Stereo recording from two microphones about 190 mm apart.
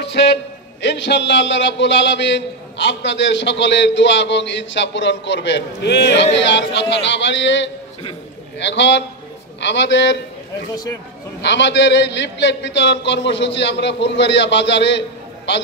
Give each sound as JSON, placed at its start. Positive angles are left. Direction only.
{"t": 0.0, "sound": "a sound", "side_deg": 65}
{"t": 0.8, "sound": "a man's voice", "side_deg": 65}
{"t": 11.4, "sound": "a man's voice", "side_deg": 70}